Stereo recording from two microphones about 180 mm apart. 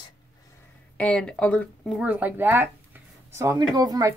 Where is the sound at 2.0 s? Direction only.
10° right (ahead or behind).